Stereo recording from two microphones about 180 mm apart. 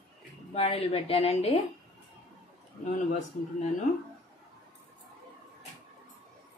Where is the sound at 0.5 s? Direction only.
35° left (ahead or behind).